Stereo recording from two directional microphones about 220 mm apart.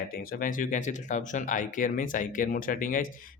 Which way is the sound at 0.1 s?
40° left (ahead or behind).